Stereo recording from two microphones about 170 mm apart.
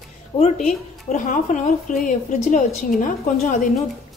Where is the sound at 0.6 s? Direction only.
45° left (ahead or behind).